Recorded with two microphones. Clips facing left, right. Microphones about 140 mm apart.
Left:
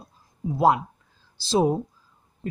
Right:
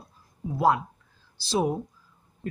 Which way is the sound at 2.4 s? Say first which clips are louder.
Left 2 dB; 20° left (ahead or behind).